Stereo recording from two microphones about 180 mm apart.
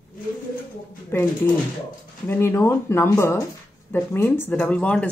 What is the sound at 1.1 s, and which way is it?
Speech, 15° left (ahead or behind).